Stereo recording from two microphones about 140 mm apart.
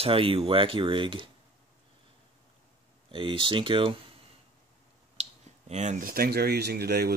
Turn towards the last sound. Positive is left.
turn(degrees=-90)